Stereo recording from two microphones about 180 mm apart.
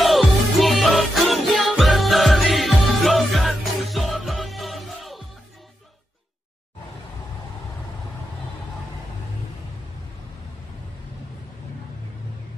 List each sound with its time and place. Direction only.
0.0 s music: centre (ahead or behind)